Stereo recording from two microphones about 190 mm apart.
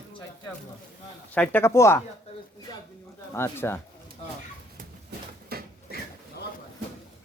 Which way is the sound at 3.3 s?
10° left (ahead or behind).